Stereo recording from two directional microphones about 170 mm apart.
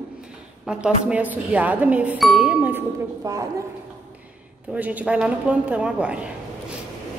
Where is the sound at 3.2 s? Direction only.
20° right (ahead or behind).